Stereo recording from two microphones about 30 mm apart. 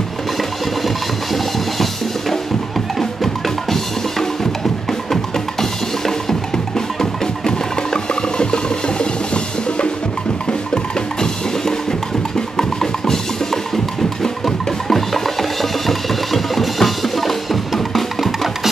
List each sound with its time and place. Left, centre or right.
0.8 s music: centre
3.0 s drum: centre
5.1 s music: centre
7.0 s music: left
10.7 s music: left
12.4 s drum: centre
14.2 s music: centre
15.9 s percussion: centre